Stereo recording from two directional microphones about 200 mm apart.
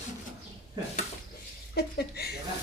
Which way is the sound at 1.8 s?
55° left (ahead or behind).